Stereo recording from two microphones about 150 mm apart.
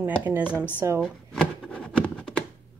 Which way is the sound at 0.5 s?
15° left (ahead or behind).